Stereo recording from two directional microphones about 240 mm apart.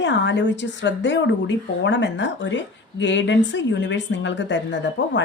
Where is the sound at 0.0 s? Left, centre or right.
Left.